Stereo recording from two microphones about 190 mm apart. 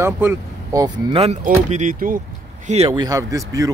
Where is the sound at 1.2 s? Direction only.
35° right (ahead or behind).